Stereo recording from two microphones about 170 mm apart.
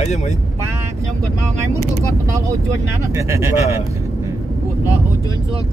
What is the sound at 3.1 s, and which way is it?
Speech, 15° right (ahead or behind).